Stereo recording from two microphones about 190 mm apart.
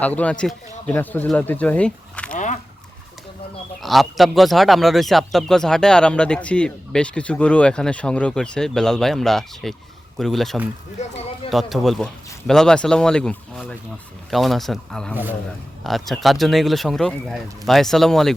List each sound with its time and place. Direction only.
0.0 s speech: 10° left (ahead or behind)
3.8 s speech: centre (ahead or behind)
11.0 s speech: 35° left (ahead or behind)
11.5 s speech: centre (ahead or behind)
15.1 s a man's voice: 10° right (ahead or behind)